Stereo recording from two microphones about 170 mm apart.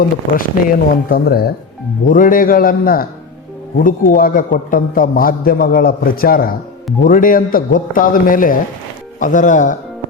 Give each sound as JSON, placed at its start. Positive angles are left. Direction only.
{"t": 0.0, "sound": "a man's voice", "side_deg": 55}
{"t": 2.0, "sound": "a man's voice", "side_deg": 50}